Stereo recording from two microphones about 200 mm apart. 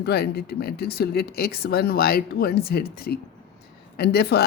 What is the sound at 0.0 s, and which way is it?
A woman's voice, 50° left (ahead or behind).